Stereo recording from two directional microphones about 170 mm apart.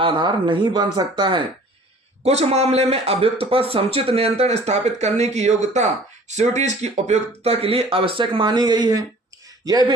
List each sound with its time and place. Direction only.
0.0 s speech: 30° right (ahead or behind)
2.2 s a man's voice: 40° right (ahead or behind)